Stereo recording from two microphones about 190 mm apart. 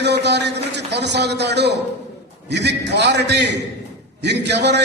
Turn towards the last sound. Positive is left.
turn(degrees=-65)  # may be behind; listen again after turning